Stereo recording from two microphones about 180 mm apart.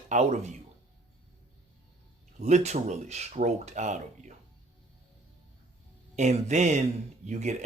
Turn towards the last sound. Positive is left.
turn(degrees=-40)  # may be behind; listen again after turning